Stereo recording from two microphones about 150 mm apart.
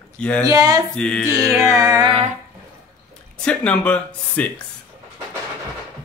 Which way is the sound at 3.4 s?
5° left (ahead or behind).